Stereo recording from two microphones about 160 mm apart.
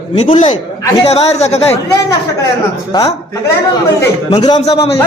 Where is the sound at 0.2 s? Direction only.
45° left (ahead or behind).